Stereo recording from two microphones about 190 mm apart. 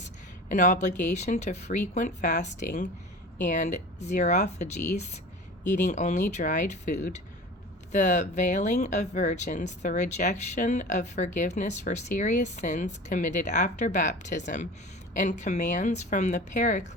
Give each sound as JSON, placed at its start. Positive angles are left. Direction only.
{"t": 0.0, "sound": "speech", "side_deg": 40}